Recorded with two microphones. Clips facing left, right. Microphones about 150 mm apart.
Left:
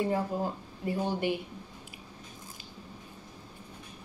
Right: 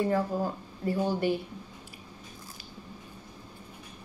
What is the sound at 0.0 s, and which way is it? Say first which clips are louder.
Speech: right 2 dB; 15° left (ahead or behind).